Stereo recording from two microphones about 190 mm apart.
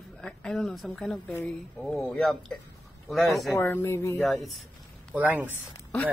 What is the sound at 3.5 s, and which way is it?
Speech, 15° left (ahead or behind).